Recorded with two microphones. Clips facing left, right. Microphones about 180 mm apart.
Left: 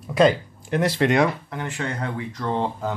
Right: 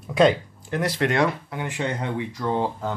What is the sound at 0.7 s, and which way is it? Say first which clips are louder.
Speech: left 3 dB; 25° left (ahead or behind).